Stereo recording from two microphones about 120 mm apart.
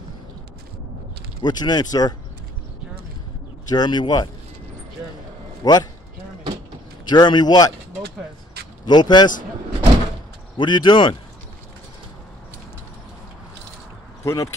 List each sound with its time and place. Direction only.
1.4 s speech: 35° left (ahead or behind)
3.7 s speech: 35° left (ahead or behind)
5.6 s a man's voice: 35° left (ahead or behind)
7.1 s speech: 35° left (ahead or behind)
8.8 s speech: 35° left (ahead or behind)
10.6 s speech: 40° left (ahead or behind)
14.2 s speech: 25° left (ahead or behind)